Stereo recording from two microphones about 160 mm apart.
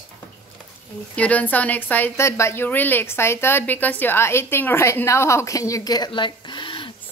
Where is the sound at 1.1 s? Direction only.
10° left (ahead or behind).